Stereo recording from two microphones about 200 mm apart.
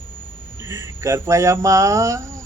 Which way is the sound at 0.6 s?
15° right (ahead or behind).